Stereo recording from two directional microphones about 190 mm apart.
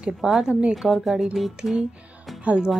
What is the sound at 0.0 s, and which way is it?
A woman's voice, 5° right (ahead or behind).